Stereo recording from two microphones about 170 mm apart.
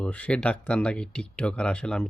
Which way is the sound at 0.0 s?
5° left (ahead or behind).